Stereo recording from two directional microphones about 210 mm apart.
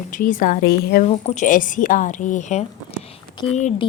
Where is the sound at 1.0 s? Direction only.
35° left (ahead or behind).